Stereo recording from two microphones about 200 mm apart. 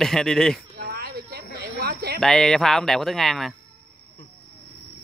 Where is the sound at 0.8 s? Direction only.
50° right (ahead or behind).